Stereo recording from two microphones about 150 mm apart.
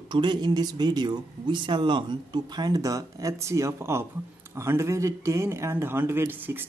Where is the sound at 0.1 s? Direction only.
30° right (ahead or behind).